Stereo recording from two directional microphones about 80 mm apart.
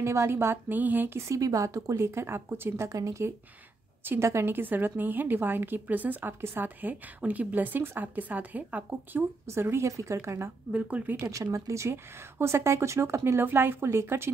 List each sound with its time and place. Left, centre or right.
0.0 s a woman's voice: right
1.2 s speech: right
2.9 s speech: right
4.0 s a woman's voice: right
9.5 s speech: right
10.7 s a woman's voice: centre
11.1 s speech: right